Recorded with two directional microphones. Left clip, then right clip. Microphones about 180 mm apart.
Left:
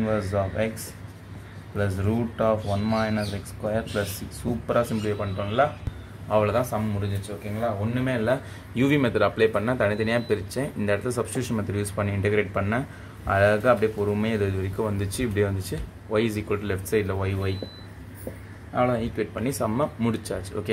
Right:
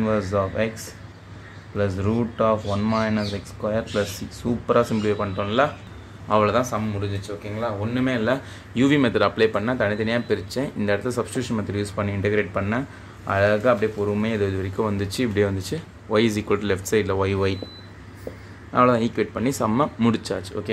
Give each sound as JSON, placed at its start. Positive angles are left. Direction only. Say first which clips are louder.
{"t": 0.3, "sound": "speech", "louder": "right 4 dB", "side_deg": -20}
{"t": 1.8, "sound": "a man's voice", "louder": "right 3 dB", "side_deg": -20}
{"t": 18.8, "sound": "speech", "louder": "right 6 dB", "side_deg": -35}
{"t": 19.3, "sound": "speech", "louder": "right 3 dB", "side_deg": -15}